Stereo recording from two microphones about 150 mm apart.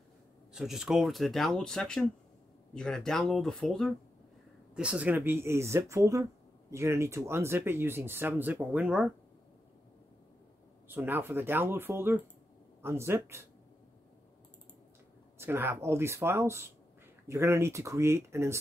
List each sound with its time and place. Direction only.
0.5 s speech: 5° right (ahead or behind)
4.7 s speech: 5° right (ahead or behind)
10.9 s speech: 15° right (ahead or behind)
15.3 s speech: 15° right (ahead or behind)